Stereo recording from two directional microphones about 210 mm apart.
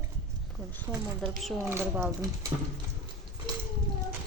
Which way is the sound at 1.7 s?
10° right (ahead or behind).